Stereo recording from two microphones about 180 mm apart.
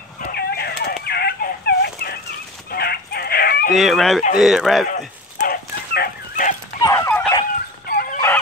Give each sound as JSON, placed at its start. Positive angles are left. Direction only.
{"t": 0.2, "sound": "fowl", "side_deg": 60}
{"t": 2.7, "sound": "chicken", "side_deg": 60}
{"t": 3.7, "sound": "speech", "side_deg": 0}
{"t": 5.4, "sound": "fowl", "side_deg": 60}
{"t": 6.8, "sound": "dog", "side_deg": 15}
{"t": 7.8, "sound": "dog", "side_deg": 55}